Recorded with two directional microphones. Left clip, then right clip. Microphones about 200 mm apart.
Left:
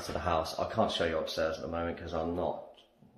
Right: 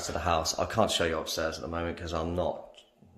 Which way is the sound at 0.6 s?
45° right (ahead or behind).